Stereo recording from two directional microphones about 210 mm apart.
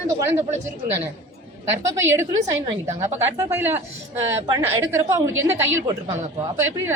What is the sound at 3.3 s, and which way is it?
A woman's voice, 10° right (ahead or behind).